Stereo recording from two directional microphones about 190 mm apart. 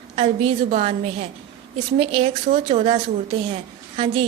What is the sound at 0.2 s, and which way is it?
A woman's voice, 30° right (ahead or behind).